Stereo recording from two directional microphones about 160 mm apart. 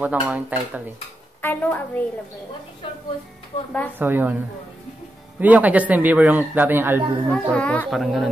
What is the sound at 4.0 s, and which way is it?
Speech, 10° right (ahead or behind).